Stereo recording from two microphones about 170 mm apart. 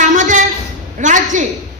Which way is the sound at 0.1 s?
45° right (ahead or behind).